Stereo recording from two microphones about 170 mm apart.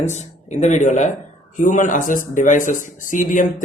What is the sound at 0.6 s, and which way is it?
Speech, 45° left (ahead or behind).